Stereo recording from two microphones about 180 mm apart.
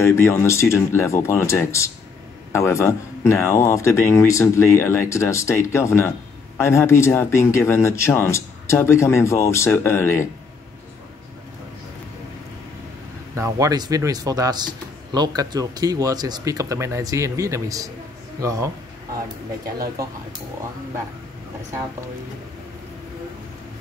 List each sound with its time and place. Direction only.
0.0 s speech: 15° left (ahead or behind)
13.4 s speech: 20° right (ahead or behind)